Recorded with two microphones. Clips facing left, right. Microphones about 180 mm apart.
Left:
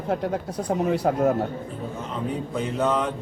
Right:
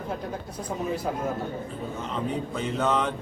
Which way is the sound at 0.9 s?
70° left (ahead or behind).